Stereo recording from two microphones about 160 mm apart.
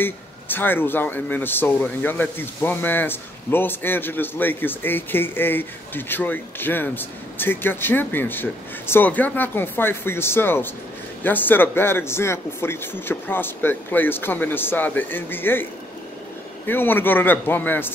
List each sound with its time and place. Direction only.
0.0 s speech: 10° left (ahead or behind)
16.6 s speech: 15° left (ahead or behind)